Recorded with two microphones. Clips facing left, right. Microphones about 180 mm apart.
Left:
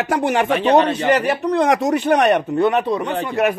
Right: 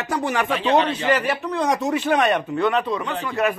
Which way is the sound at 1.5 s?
90° left.